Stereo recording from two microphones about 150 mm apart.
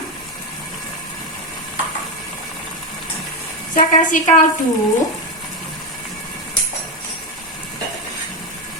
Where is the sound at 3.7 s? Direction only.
60° left (ahead or behind).